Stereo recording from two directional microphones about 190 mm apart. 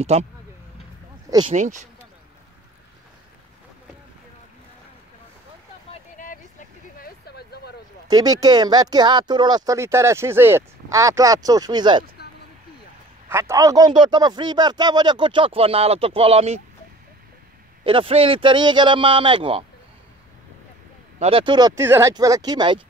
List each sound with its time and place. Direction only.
0.0 s speech: 35° right (ahead or behind)
1.5 s speech: 40° right (ahead or behind)
6.1 s a sound: 45° left (ahead or behind)
7.0 s a sound: 55° left (ahead or behind)
8.1 s speech: 20° right (ahead or behind)
12.2 s vehicle: 55° left (ahead or behind)
13.3 s speech: 15° right (ahead or behind); by 16.6 s 35° right (ahead or behind)
17.8 s speech: 30° right (ahead or behind)
21.2 s speech: 30° right (ahead or behind)